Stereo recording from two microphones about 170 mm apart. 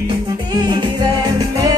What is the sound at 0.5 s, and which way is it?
Music, 25° right (ahead or behind).